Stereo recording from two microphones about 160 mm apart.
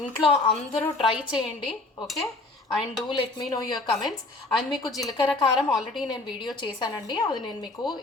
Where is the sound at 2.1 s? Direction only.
Centre (ahead or behind).